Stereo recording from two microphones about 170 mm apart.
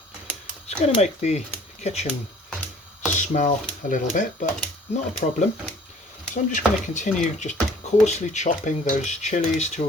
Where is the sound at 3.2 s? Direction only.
45° left (ahead or behind).